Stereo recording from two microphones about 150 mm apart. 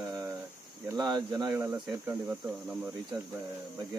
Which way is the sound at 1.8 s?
10° right (ahead or behind).